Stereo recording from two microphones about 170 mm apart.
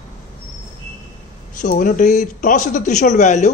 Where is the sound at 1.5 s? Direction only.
50° left (ahead or behind).